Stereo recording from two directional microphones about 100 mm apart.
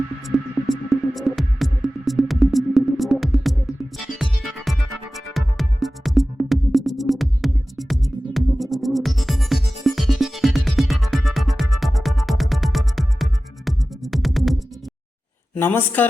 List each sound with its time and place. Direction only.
0.3 s music: centre (ahead or behind)
15.5 s a woman's voice: 20° left (ahead or behind)